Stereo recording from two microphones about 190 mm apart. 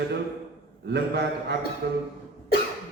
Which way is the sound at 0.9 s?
60° right (ahead or behind).